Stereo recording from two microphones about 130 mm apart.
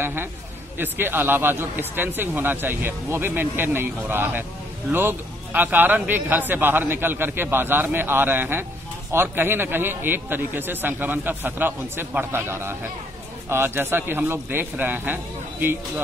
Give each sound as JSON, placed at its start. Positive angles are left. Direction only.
{"t": 0.0, "sound": "a man's voice", "side_deg": -15}